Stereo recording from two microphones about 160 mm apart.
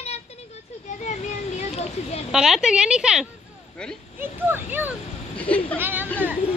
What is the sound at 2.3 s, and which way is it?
Speech, 5° right (ahead or behind).